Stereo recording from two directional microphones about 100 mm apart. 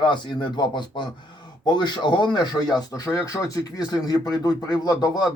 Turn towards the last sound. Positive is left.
turn(degrees=40)  # may be behind; listen again after turning